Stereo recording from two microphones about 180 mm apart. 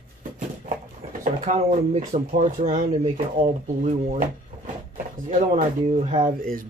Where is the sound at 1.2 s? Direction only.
45° right (ahead or behind).